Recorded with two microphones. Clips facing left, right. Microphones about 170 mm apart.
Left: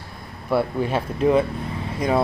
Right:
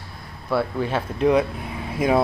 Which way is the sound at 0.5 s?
15° left (ahead or behind).